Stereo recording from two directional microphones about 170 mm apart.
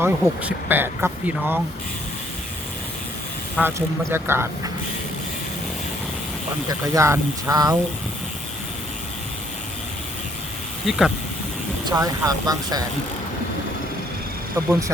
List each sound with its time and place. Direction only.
0.0 s speech: 10° right (ahead or behind)
3.6 s speech: 15° right (ahead or behind)
6.7 s speech: 20° right (ahead or behind)
10.8 s speech: centre (ahead or behind)
11.9 s speech: 20° right (ahead or behind)